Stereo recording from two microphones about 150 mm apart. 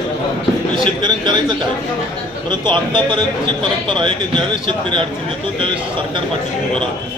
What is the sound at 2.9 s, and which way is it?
A man's voice, 30° right (ahead or behind).